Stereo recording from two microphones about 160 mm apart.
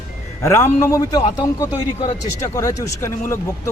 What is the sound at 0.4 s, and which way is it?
A man's voice, 15° left (ahead or behind).